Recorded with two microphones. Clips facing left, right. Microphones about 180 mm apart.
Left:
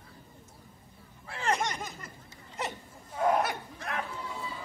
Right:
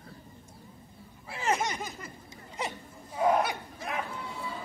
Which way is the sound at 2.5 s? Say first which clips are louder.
Even; 5° right (ahead or behind).